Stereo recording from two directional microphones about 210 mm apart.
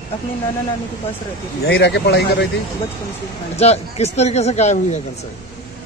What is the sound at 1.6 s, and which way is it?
Speech, 50° left (ahead or behind).